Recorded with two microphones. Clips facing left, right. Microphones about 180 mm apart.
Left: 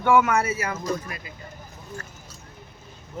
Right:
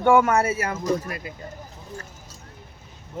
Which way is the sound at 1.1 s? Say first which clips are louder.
Right 5 dB; 50° right (ahead or behind).